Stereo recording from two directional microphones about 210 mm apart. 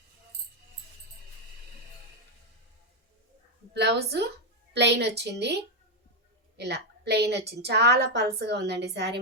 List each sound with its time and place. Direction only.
3.8 s a woman's voice: 50° right (ahead or behind)
6.6 s a woman's voice: 50° right (ahead or behind)